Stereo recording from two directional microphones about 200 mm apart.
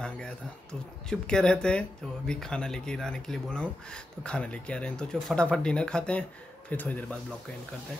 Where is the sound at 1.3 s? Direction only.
5° left (ahead or behind).